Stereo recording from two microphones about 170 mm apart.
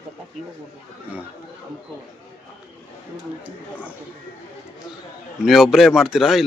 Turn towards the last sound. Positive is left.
turn(degrees=0)  # may be behind; listen again after turning